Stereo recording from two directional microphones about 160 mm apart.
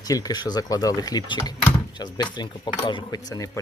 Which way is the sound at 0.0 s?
25° left (ahead or behind).